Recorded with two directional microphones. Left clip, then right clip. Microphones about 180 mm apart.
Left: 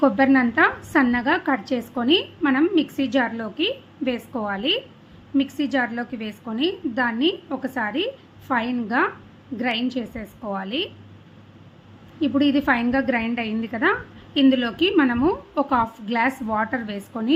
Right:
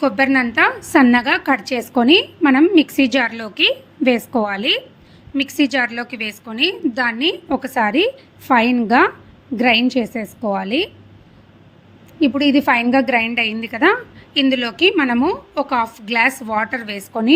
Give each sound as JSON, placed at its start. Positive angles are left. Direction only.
{"t": 0.0, "sound": "a woman's voice", "side_deg": -40}
{"t": 12.2, "sound": "a woman's voice", "side_deg": -35}